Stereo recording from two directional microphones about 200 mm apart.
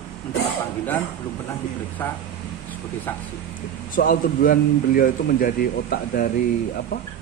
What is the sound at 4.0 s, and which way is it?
Speech, 45° left (ahead or behind).